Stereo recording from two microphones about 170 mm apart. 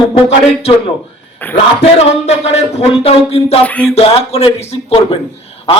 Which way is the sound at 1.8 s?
40° left (ahead or behind).